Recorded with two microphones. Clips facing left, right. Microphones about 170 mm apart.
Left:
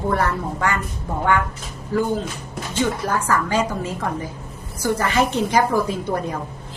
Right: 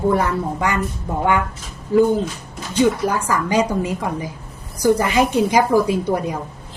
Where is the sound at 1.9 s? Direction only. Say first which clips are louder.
Right 6 dB; 15° right (ahead or behind).